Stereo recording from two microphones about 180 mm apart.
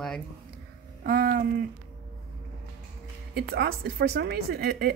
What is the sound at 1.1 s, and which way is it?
Speech, 55° right (ahead or behind).